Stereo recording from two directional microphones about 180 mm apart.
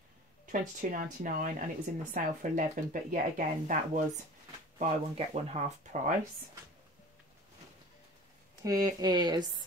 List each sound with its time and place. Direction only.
0.5 s speech: 50° right (ahead or behind)
4.7 s speech: 35° right (ahead or behind)
8.6 s speech: 20° right (ahead or behind)